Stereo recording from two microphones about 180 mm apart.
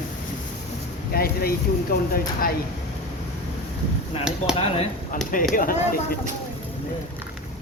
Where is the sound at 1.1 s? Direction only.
55° left (ahead or behind).